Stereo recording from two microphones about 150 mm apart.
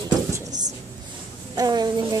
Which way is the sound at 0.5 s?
55° right (ahead or behind).